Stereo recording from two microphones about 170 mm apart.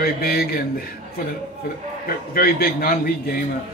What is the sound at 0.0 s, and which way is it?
A man's voice, 65° left (ahead or behind).